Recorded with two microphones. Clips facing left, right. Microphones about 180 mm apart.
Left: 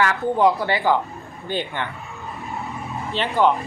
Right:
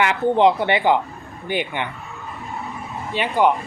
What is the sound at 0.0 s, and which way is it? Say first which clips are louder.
A man's voice: right 2 dB; 20° right (ahead or behind).